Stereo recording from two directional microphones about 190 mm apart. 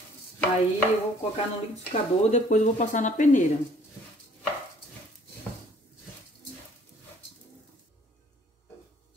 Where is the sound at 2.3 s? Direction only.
40° left (ahead or behind).